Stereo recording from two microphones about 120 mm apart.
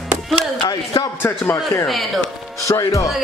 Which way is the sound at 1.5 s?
25° left (ahead or behind).